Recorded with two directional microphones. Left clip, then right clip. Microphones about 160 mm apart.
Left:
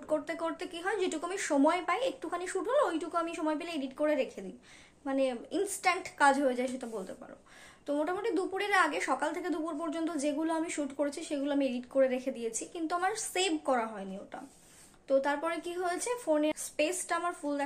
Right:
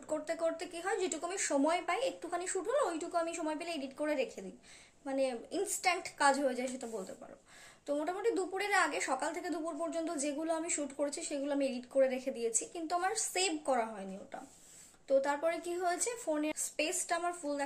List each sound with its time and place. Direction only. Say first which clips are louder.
0.1 s a woman's voice: left 2 dB; 5° right (ahead or behind)